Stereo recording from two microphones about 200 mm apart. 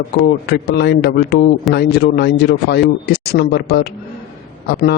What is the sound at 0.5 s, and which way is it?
Speech, 55° left (ahead or behind).